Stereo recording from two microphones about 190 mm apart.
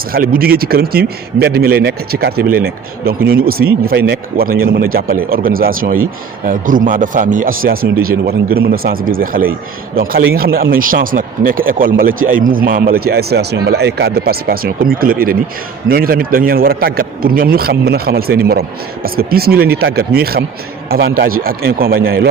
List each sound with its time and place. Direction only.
0.1 s a man's voice: 50° right (ahead or behind)